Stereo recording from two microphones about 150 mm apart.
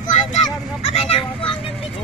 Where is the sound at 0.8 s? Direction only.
45° left (ahead or behind).